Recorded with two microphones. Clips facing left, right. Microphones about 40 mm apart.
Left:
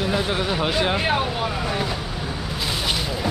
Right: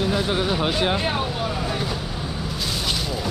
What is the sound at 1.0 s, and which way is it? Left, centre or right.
Speech, centre.